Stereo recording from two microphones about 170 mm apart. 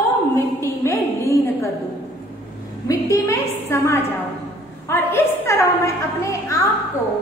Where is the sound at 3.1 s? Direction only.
15° left (ahead or behind).